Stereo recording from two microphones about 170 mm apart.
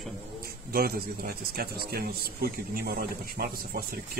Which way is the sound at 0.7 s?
60° right (ahead or behind).